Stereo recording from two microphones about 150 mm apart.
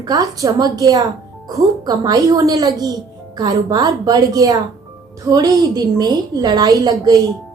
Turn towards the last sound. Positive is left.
turn(degrees=-25)  # may be behind; listen again after turning